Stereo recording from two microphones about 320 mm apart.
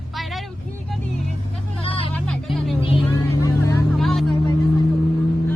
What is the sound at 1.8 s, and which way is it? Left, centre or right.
Vehicle, centre.